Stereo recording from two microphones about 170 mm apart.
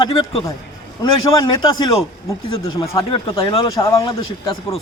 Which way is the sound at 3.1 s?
30° left (ahead or behind).